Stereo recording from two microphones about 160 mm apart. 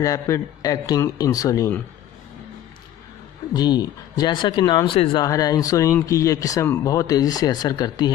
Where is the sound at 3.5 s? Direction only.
25° left (ahead or behind).